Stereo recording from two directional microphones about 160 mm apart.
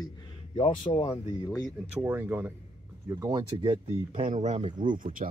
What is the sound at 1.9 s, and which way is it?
Speech, 10° right (ahead or behind).